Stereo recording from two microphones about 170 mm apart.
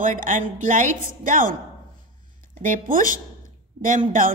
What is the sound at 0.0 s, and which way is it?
A woman's voice, 50° right (ahead or behind).